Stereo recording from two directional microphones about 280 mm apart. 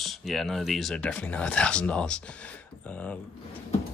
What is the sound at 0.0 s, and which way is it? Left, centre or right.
Speech, centre.